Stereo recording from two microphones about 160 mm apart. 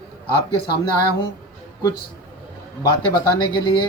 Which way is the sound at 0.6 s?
80° left.